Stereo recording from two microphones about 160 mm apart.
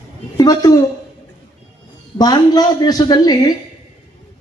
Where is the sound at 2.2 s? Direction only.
25° left (ahead or behind).